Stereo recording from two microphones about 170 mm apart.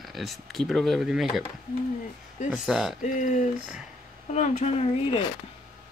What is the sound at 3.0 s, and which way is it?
Speech, 45° left (ahead or behind).